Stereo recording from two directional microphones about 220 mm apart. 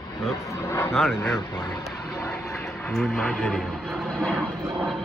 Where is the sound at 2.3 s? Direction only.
Centre (ahead or behind).